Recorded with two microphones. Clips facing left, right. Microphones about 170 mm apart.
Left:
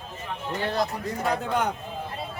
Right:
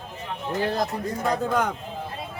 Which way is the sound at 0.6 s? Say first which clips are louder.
Right 2 dB; 40° right (ahead or behind).